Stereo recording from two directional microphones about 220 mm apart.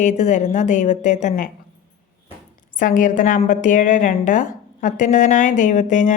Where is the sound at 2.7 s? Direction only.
35° left (ahead or behind).